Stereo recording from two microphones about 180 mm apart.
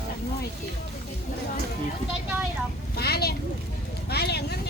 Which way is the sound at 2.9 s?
60° left (ahead or behind).